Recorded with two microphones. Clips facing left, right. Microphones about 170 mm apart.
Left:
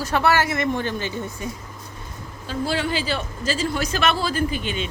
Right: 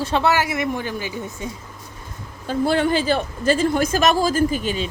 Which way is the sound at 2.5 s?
50° right (ahead or behind).